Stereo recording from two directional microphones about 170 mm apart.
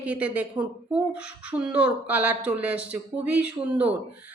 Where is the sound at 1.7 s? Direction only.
10° right (ahead or behind).